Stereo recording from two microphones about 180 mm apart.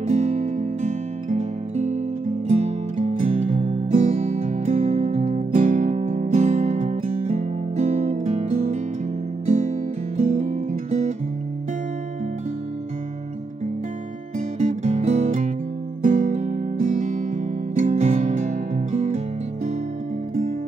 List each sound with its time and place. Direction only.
0.0 s music: 40° right (ahead or behind)
14.6 s music: 40° right (ahead or behind)